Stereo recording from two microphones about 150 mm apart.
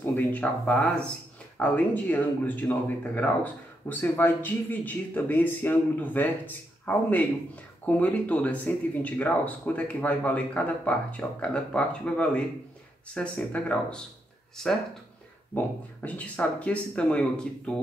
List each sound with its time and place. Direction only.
0.0 s speech: 10° left (ahead or behind)